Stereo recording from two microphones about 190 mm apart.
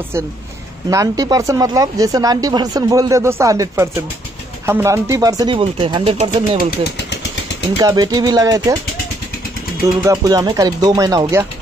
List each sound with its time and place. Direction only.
0.8 s speech: 20° right (ahead or behind)
7.7 s speech: 20° right (ahead or behind)
10.0 s speech: 20° right (ahead or behind)